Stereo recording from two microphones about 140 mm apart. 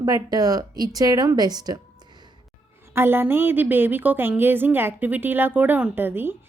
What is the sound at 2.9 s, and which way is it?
A woman's voice, 15° right (ahead or behind).